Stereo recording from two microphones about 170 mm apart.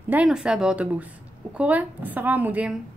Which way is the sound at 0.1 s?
5° right (ahead or behind).